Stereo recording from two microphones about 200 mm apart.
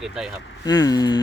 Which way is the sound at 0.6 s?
20° left (ahead or behind).